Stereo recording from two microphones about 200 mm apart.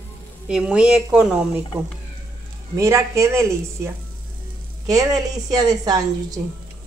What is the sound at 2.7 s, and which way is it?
A woman's voice, 15° right (ahead or behind).